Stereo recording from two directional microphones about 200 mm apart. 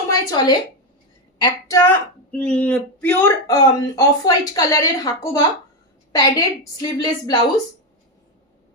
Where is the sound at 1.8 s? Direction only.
10° left (ahead or behind).